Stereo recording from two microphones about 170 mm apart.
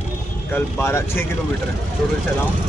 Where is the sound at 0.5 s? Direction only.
15° left (ahead or behind).